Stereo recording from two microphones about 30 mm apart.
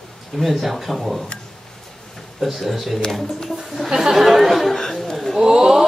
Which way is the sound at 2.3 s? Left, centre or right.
Centre.